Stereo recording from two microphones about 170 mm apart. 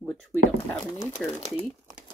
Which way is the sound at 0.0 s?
5° left (ahead or behind).